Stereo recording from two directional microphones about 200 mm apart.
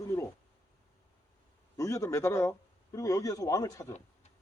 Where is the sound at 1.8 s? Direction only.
15° left (ahead or behind).